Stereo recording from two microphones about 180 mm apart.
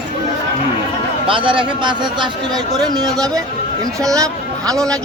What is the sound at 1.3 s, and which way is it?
A man's voice, 30° right (ahead or behind).